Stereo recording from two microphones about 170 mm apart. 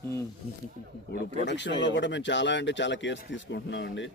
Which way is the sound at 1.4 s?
90° left.